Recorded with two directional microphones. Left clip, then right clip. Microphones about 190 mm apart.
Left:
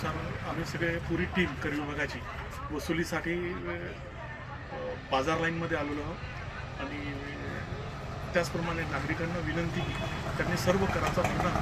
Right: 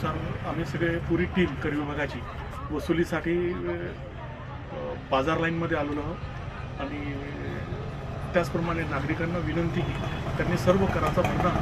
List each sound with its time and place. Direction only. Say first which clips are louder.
0.0 s speech: right 4 dB; centre (ahead or behind)
5.1 s speech: right 4 dB; centre (ahead or behind)
8.3 s speech: right 4 dB; centre (ahead or behind)